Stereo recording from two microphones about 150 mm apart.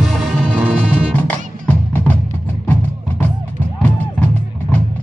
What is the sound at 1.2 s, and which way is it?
Music, 10° left (ahead or behind).